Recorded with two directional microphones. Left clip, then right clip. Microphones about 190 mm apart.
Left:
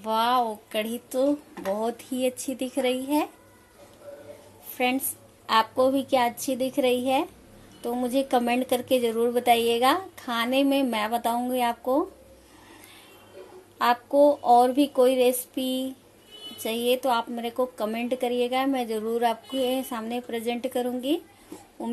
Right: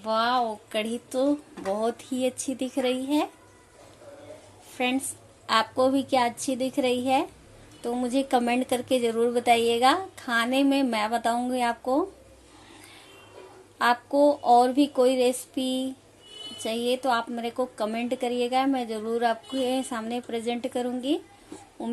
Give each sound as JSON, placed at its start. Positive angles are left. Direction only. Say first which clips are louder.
{"t": 0.0, "sound": "a woman's voice", "louder": "left 1 dB", "side_deg": 5}
{"t": 4.7, "sound": "a woman's voice", "louder": "left 2 dB", "side_deg": 5}
{"t": 13.7, "sound": "a woman's voice", "louder": "left 2 dB", "side_deg": 0}